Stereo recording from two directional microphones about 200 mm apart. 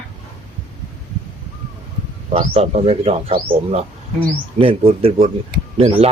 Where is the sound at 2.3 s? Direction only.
30° right (ahead or behind).